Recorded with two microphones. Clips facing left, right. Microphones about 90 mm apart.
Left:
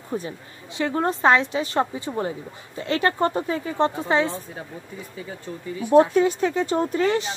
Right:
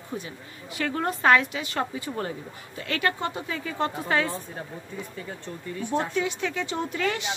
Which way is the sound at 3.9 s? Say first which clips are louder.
Left 4 dB; 20° left (ahead or behind).